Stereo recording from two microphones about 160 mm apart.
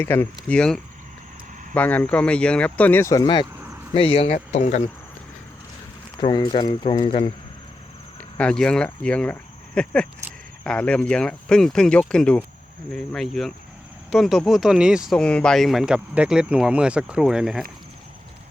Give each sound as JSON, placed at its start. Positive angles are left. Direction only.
{"t": 0.0, "sound": "speech", "side_deg": 15}
{"t": 3.9, "sound": "speech", "side_deg": 35}
{"t": 6.1, "sound": "speech", "side_deg": 25}
{"t": 8.4, "sound": "speech", "side_deg": 5}